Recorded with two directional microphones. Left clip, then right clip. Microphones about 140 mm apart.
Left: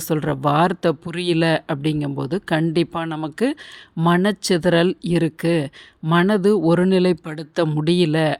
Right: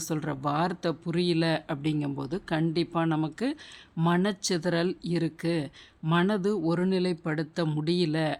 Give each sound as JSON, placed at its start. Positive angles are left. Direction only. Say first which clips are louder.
{"t": 0.1, "sound": "speech", "louder": "left 11 dB", "side_deg": 40}